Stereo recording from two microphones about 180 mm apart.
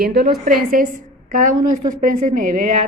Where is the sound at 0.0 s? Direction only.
55° right (ahead or behind).